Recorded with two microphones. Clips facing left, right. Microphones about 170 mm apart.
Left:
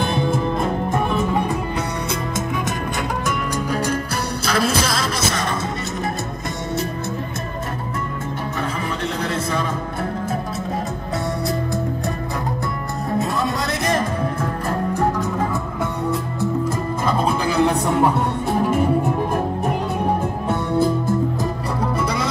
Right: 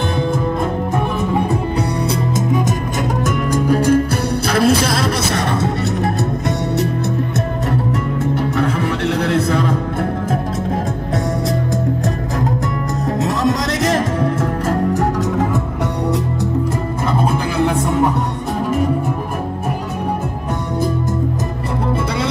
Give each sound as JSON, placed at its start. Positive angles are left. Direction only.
{"t": 3.5, "sound": "music", "side_deg": -50}
{"t": 9.2, "sound": "music", "side_deg": -65}
{"t": 13.2, "sound": "music", "side_deg": -90}